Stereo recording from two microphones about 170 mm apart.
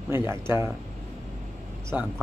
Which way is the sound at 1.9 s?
10° right (ahead or behind).